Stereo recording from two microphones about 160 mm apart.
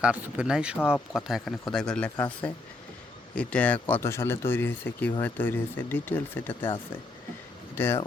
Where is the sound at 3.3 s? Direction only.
5° left (ahead or behind).